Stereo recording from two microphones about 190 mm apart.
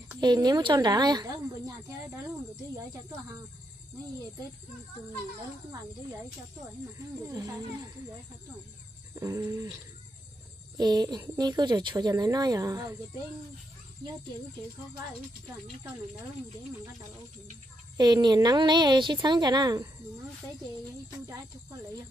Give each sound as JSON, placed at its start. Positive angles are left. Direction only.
{"t": 0.2, "sound": "speech", "side_deg": -20}
{"t": 7.2, "sound": "speech", "side_deg": -20}
{"t": 9.1, "sound": "a sound", "side_deg": -15}
{"t": 10.8, "sound": "speech", "side_deg": -20}
{"t": 17.9, "sound": "speech", "side_deg": -20}